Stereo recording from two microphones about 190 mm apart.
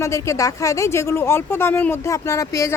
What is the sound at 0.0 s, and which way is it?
Speech, 15° left (ahead or behind).